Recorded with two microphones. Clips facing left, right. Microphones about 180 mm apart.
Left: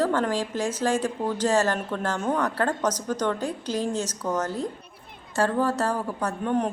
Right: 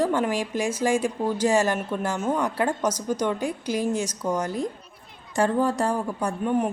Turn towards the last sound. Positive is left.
turn(degrees=-10)  # may be behind; listen again after turning